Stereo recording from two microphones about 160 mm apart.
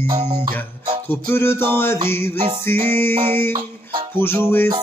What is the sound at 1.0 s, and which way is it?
Music, 15° left (ahead or behind).